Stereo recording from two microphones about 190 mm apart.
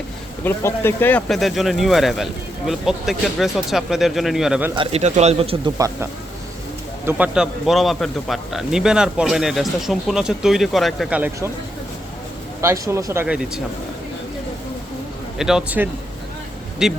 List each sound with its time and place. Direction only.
0.4 s speech: 10° left (ahead or behind)
4.7 s speech: 30° right (ahead or behind)
5.7 s speech: 15° right (ahead or behind)
12.6 s speech: 15° right (ahead or behind)
15.4 s speech: 5° right (ahead or behind)